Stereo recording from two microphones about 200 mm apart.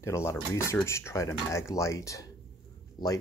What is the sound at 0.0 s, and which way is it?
Speech, 15° left (ahead or behind).